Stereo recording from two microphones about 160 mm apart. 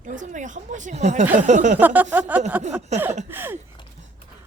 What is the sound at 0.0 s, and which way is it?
A woman's voice, 55° right (ahead or behind).